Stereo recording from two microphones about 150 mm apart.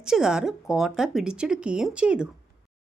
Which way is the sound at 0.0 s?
5° right (ahead or behind).